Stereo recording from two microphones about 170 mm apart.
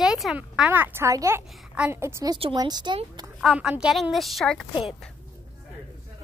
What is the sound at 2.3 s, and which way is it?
Speech, 30° right (ahead or behind).